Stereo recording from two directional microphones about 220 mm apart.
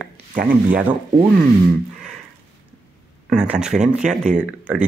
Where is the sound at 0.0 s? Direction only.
35° right (ahead or behind).